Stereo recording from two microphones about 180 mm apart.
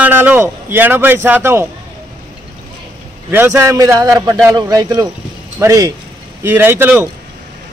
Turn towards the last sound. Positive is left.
turn(degrees=-10)  # may be behind; listen again after turning